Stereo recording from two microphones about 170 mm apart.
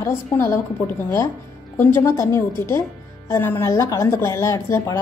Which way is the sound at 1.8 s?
15° left (ahead or behind).